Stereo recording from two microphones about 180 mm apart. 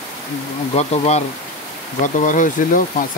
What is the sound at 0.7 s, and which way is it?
Speech, 35° left (ahead or behind).